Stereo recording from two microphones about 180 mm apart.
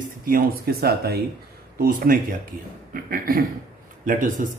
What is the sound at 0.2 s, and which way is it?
A man's voice, 55° right (ahead or behind).